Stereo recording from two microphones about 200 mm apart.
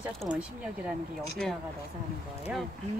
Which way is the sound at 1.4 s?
5° left (ahead or behind).